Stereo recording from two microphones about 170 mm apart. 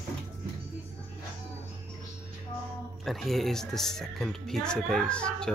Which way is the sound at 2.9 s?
Centre (ahead or behind).